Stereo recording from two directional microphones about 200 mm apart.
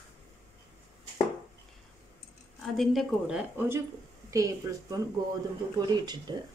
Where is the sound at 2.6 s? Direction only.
Centre (ahead or behind).